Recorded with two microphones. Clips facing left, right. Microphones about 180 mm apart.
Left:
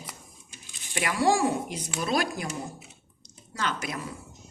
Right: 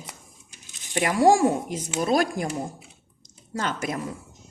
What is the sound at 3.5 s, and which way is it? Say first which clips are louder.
Speech: right 4 dB; 45° right (ahead or behind).